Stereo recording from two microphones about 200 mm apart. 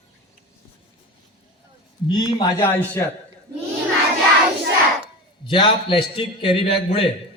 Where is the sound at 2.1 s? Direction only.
20° left (ahead or behind).